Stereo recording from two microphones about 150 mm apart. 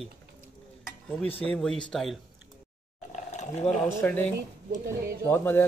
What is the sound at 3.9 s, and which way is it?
Speech, 15° left (ahead or behind).